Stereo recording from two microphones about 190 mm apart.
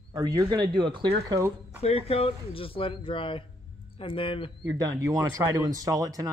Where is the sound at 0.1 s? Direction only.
20° right (ahead or behind).